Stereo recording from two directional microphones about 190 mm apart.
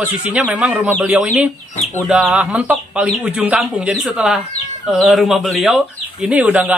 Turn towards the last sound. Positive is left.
turn(degrees=-5)  # may be behind; listen again after turning